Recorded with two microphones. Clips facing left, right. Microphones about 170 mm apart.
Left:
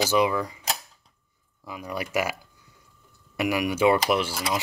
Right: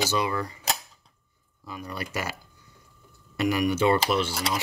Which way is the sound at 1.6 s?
15° left (ahead or behind).